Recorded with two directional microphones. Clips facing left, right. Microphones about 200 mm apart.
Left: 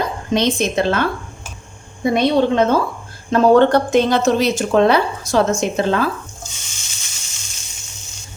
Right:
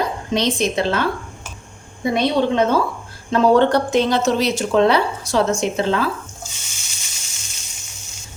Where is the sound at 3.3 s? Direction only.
50° left (ahead or behind).